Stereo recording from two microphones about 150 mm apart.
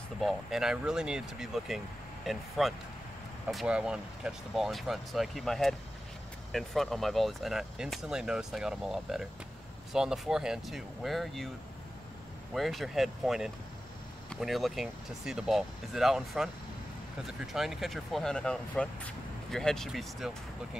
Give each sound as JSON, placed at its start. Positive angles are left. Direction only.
{"t": 0.2, "sound": "speech", "side_deg": 0}
{"t": 12.5, "sound": "speech", "side_deg": 0}